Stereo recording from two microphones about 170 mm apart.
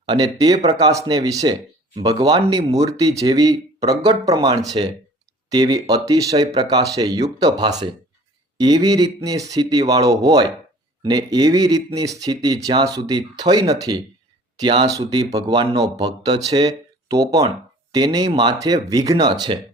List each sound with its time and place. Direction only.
0.0 s speech: 25° right (ahead or behind)